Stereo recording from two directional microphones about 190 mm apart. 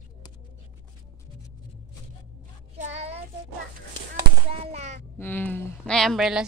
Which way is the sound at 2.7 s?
35° right (ahead or behind).